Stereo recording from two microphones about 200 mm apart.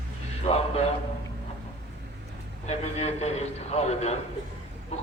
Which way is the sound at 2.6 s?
30° left (ahead or behind).